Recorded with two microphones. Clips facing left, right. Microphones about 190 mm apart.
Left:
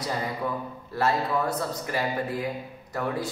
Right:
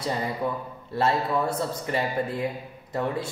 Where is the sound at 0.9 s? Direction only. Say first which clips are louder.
Right 1 dB; 25° right (ahead or behind).